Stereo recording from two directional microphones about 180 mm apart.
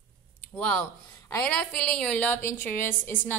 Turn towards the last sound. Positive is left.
turn(degrees=10)  # may be behind; listen again after turning